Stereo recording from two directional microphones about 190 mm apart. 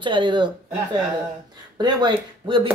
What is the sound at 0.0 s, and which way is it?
Speech, 25° right (ahead or behind).